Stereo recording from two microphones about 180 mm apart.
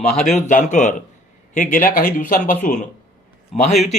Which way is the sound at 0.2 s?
40° left (ahead or behind).